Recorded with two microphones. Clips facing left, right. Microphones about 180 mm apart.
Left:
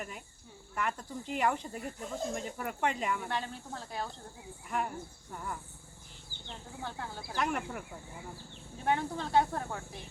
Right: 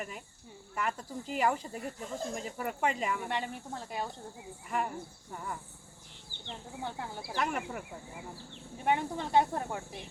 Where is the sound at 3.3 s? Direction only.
15° right (ahead or behind).